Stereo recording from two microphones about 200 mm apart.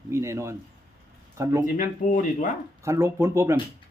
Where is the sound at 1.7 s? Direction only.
40° left (ahead or behind).